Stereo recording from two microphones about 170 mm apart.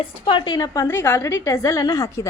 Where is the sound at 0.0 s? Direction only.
30° left (ahead or behind).